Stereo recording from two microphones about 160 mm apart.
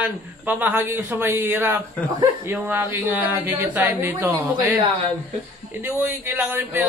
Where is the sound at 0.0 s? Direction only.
10° right (ahead or behind).